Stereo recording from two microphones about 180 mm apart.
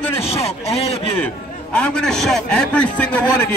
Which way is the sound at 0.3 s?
35° left (ahead or behind).